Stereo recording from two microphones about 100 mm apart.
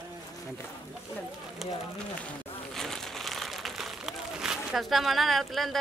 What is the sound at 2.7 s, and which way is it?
Speech, 5° left (ahead or behind).